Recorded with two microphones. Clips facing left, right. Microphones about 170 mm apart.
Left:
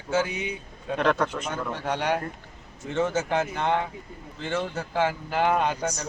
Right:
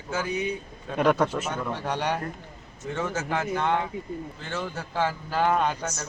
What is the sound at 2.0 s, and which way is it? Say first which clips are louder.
Speech: left 3 dB; 10° left (ahead or behind).